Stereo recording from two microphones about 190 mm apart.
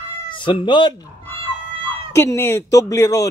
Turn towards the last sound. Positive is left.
turn(degrees=15)  # may be behind; listen again after turning